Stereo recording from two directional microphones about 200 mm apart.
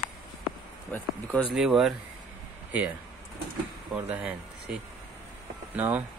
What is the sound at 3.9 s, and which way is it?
Speech, 5° right (ahead or behind).